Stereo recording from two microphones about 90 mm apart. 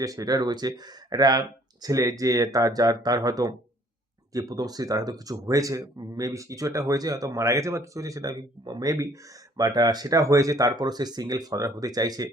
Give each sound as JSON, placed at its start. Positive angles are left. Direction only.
{"t": 0.0, "sound": "speech", "side_deg": -40}